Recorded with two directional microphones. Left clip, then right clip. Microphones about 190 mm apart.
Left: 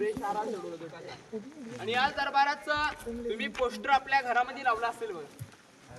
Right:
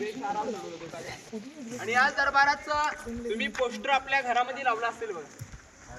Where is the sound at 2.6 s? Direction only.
55° left (ahead or behind).